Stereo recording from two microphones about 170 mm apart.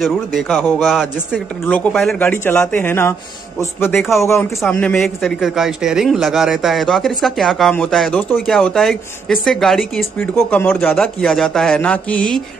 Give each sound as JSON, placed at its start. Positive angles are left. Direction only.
{"t": 0.0, "sound": "speech", "side_deg": 0}
{"t": 1.6, "sound": "a man's voice", "side_deg": 10}
{"t": 10.1, "sound": "a man's voice", "side_deg": 10}